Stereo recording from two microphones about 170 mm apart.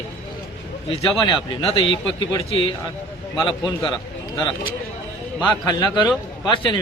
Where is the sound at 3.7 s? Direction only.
20° left (ahead or behind).